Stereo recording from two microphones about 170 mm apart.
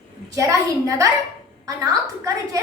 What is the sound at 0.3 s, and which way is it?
A woman's voice, 20° right (ahead or behind).